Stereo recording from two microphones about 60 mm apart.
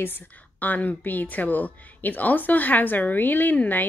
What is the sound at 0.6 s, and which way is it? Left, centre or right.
A woman's voice, left.